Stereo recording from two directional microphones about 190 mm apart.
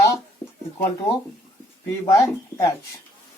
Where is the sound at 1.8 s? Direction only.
15° left (ahead or behind).